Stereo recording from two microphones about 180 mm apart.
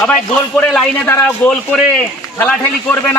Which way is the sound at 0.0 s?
5° left (ahead or behind).